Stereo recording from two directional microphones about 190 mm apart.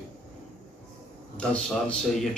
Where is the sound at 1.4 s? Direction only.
5° left (ahead or behind).